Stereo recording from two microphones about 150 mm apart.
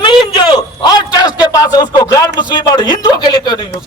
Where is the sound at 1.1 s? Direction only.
25° left (ahead or behind).